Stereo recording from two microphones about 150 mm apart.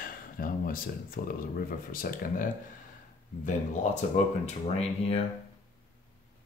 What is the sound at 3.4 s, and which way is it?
Speech, 55° left (ahead or behind).